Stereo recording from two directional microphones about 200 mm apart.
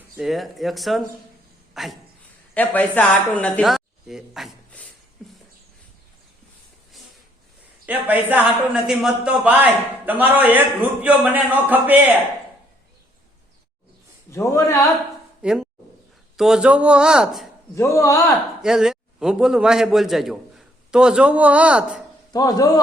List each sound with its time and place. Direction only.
0.2 s speech: centre (ahead or behind)
7.9 s speech: 10° right (ahead or behind)
14.3 s a man's voice: 15° left (ahead or behind)
15.4 s speech: 5° right (ahead or behind)
17.7 s a man's voice: 15° left (ahead or behind)
18.6 s a man's voice: centre (ahead or behind)
22.3 s a man's voice: 20° left (ahead or behind)